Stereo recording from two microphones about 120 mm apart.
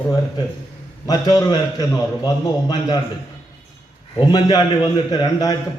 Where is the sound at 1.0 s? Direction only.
35° left (ahead or behind).